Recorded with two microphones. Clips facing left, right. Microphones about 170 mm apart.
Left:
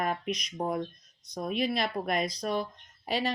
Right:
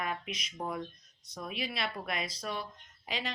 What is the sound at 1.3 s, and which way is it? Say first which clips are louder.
Speech: left 8 dB; 45° left (ahead or behind).